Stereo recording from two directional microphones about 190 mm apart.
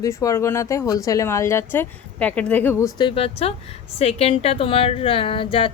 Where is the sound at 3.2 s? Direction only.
30° left (ahead or behind).